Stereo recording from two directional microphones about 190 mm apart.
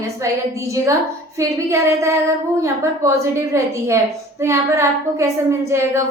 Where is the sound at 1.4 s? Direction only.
15° right (ahead or behind).